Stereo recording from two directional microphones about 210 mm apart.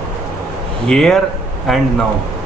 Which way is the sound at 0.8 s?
5° left (ahead or behind).